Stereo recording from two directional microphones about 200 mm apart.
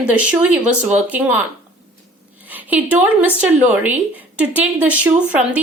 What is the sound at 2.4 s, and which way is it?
A woman's voice, 10° right (ahead or behind).